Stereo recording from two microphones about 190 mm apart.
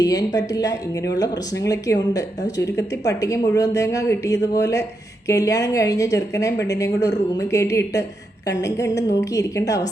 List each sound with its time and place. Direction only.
0.0 s speech: 20° left (ahead or behind)